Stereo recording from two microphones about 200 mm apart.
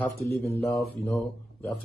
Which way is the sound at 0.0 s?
15° left (ahead or behind).